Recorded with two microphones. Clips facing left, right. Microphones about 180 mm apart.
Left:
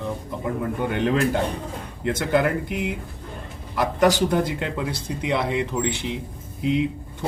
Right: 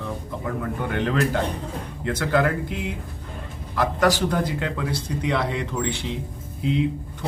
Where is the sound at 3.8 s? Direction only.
20° left (ahead or behind).